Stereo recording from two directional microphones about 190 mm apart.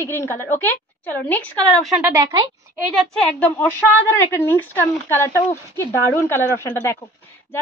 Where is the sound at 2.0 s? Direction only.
20° right (ahead or behind).